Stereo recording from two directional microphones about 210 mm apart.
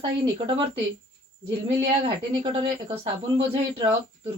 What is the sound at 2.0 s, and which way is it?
Speech, 25° right (ahead or behind).